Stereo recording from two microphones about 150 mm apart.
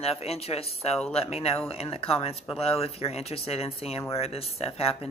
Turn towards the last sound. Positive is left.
turn(degrees=40)  # may be behind; listen again after turning